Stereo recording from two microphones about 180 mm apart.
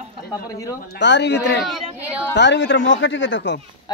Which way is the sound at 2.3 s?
80° left.